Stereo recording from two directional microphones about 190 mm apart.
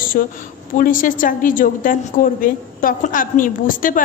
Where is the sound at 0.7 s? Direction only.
45° left (ahead or behind).